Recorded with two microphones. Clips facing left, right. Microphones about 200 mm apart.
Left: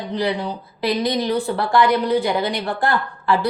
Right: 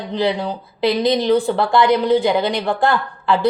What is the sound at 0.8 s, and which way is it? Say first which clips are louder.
A woman's voice: right 4 dB; 20° right (ahead or behind).